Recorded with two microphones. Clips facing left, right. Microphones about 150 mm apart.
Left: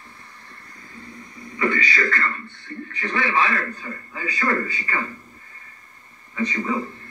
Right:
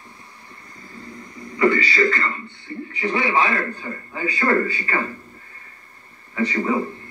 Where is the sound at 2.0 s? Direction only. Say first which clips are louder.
Right 4 dB; 20° right (ahead or behind).